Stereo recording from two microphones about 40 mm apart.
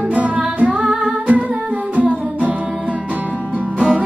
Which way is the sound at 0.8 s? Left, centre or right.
Centre.